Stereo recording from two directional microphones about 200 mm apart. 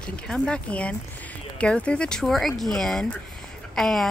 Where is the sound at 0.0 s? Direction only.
5° left (ahead or behind).